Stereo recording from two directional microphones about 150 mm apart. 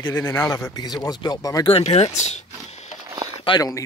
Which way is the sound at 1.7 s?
45° left (ahead or behind).